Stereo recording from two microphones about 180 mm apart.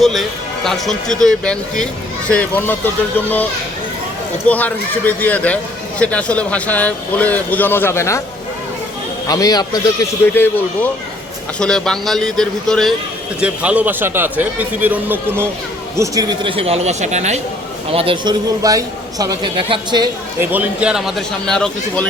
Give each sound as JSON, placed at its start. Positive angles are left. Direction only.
{"t": 0.0, "sound": "speech", "side_deg": 0}
{"t": 4.4, "sound": "speech", "side_deg": 10}
{"t": 9.2, "sound": "a man's voice", "side_deg": 20}
{"t": 17.9, "sound": "a man's voice", "side_deg": -30}
{"t": 20.4, "sound": "speech", "side_deg": -10}